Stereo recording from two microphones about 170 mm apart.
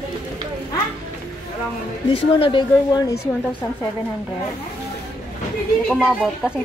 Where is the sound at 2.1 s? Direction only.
30° left (ahead or behind).